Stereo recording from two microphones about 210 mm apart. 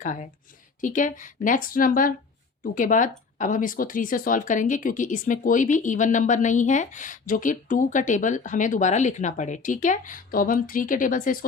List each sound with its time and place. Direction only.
0.0 s speech: 35° left (ahead or behind)